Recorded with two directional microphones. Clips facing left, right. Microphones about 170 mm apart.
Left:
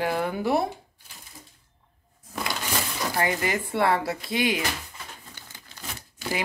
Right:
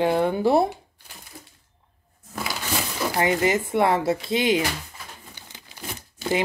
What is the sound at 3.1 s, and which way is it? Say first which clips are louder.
Speech: right 5 dB; 20° right (ahead or behind).